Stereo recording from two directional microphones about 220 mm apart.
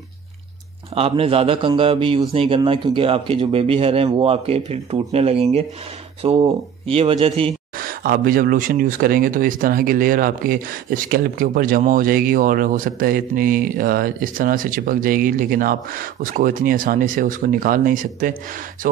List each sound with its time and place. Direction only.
0.9 s speech: 25° right (ahead or behind)
7.7 s speech: 40° right (ahead or behind)